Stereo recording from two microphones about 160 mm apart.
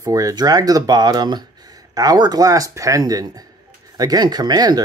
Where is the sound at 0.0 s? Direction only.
20° right (ahead or behind).